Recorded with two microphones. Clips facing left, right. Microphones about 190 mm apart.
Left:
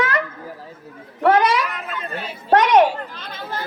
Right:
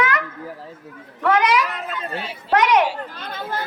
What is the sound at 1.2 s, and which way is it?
A woman's voice, 30° left (ahead or behind).